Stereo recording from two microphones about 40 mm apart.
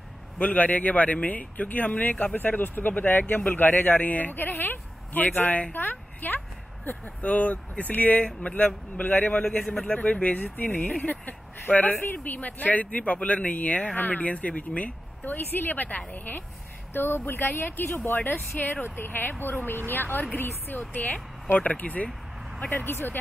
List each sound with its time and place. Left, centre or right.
0.4 s speech: left
7.2 s speech: left
9.6 s speech: left
9.8 s speech: left
10.9 s speech: left
11.2 s speech: left
15.2 s speech: left
16.9 s speech: left
22.8 s speech: left